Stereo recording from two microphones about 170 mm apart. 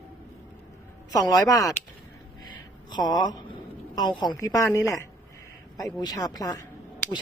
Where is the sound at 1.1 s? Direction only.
20° left (ahead or behind).